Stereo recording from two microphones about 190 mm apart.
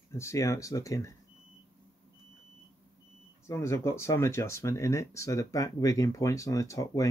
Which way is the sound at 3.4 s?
15° left (ahead or behind).